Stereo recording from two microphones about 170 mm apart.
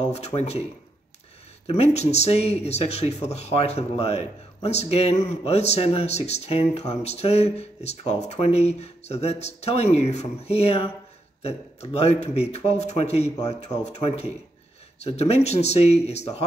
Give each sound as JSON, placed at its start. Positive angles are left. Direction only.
{"t": 0.0, "sound": "speech", "side_deg": 40}
{"t": 1.7, "sound": "speech", "side_deg": 40}